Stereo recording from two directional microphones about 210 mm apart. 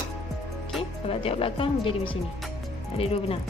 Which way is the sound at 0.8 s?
25° left (ahead or behind).